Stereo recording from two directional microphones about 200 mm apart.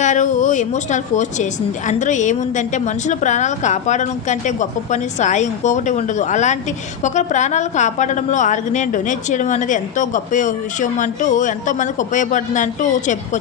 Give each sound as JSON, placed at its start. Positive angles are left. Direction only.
{"t": 0.0, "sound": "a woman's voice", "side_deg": 40}